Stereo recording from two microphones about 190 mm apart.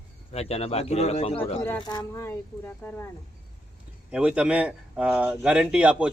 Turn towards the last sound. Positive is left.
turn(degrees=-5)  # may be behind; listen again after turning